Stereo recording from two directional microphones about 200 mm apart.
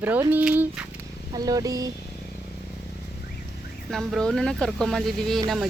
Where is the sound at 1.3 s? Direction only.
20° right (ahead or behind).